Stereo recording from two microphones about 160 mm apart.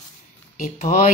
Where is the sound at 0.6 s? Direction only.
55° left (ahead or behind).